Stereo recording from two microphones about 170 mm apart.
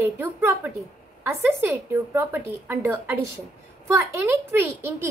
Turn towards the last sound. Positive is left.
turn(degrees=-15)  # may be behind; listen again after turning